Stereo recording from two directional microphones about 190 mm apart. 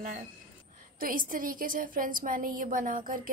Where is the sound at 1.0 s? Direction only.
45° right (ahead or behind).